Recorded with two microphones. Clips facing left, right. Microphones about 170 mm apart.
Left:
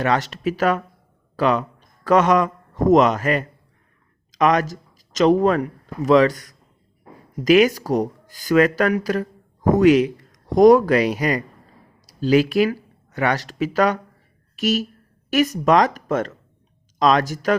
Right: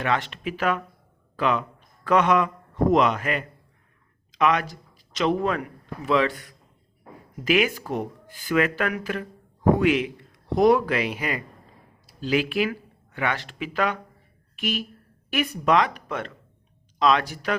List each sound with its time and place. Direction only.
0.0 s speech: 40° left (ahead or behind)